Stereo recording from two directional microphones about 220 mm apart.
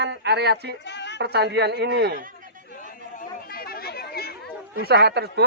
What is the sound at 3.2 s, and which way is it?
Chatter, 45° left (ahead or behind).